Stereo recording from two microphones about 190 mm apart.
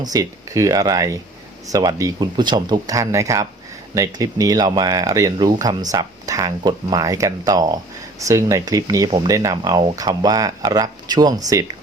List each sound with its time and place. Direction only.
0.0 s speech: 20° right (ahead or behind)